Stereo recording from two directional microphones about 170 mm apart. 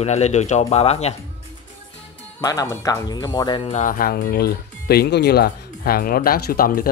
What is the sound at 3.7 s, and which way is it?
Speech, 50° left (ahead or behind).